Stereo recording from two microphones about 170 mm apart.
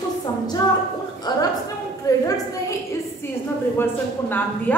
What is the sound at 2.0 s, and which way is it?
Speech, 20° left (ahead or behind).